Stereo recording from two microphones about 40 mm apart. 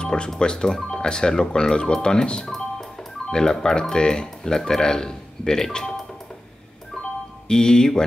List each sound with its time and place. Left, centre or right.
0.0 s speech: left
2.4 s music: centre
3.3 s speech: centre
7.4 s speech: centre